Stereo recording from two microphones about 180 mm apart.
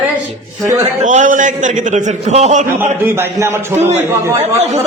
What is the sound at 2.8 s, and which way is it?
A man's voice, 10° right (ahead or behind).